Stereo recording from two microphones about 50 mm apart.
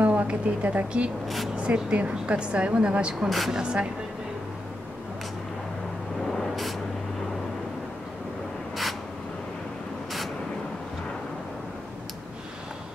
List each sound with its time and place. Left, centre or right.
0.0 s a woman's voice: right
1.2 s speech: centre
1.6 s a woman's voice: right
3.3 s speech: centre
3.5 s speech: centre
6.3 s vehicle: centre